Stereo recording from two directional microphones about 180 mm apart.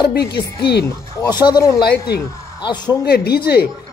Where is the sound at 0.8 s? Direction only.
20° left (ahead or behind).